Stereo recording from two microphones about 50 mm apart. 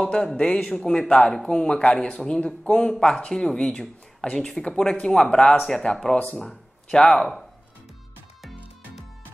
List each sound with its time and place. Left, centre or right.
0.0 s speech: centre